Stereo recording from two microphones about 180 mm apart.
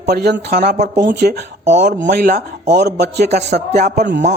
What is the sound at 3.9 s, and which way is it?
Speech, 80° right.